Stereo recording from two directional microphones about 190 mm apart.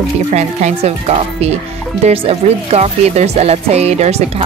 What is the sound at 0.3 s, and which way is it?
Speech, 35° right (ahead or behind).